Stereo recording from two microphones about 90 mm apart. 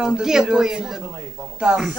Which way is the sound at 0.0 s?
10° right (ahead or behind).